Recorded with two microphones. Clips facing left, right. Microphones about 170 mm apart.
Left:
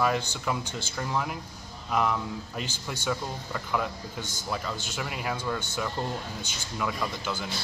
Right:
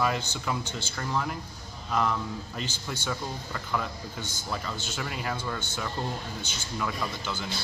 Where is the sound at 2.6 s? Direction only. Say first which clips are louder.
Even; 5° left (ahead or behind).